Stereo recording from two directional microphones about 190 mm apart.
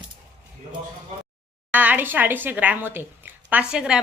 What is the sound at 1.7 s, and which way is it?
A woman's voice, 10° right (ahead or behind).